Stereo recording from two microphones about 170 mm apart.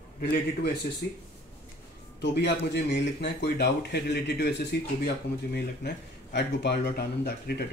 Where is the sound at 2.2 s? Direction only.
80° left.